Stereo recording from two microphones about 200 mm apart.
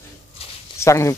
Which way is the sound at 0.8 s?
15° left (ahead or behind).